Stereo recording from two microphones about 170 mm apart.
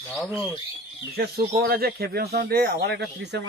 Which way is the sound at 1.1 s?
65° right (ahead or behind).